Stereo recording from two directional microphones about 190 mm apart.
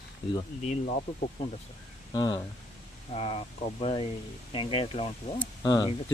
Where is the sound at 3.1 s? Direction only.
30° left (ahead or behind).